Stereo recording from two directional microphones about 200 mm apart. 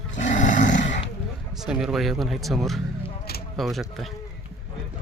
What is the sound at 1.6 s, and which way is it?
Speech, 5° right (ahead or behind).